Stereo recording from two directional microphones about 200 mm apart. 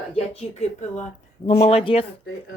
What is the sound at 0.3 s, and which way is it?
Speech, 35° left (ahead or behind).